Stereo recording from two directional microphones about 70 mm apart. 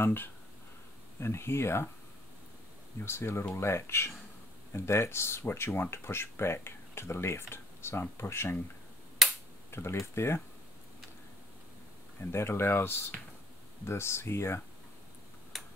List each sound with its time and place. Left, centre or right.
0.0 s speech: left
3.1 s speech: left
9.2 s finger snapping: centre
9.7 s speech: left
12.2 s speech: left
15.5 s tick-tock: centre